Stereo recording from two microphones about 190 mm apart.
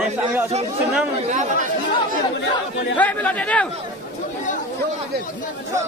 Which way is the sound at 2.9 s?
10° left (ahead or behind).